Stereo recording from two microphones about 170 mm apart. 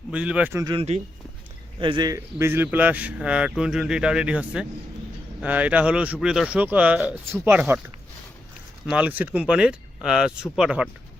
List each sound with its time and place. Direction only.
0.1 s speech: 5° right (ahead or behind)
0.6 s speech: 25° right (ahead or behind); by 7.8 s 10° right (ahead or behind)
8.9 s speech: 10° right (ahead or behind)